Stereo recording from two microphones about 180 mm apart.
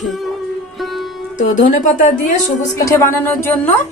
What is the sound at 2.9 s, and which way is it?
Music, 15° left (ahead or behind).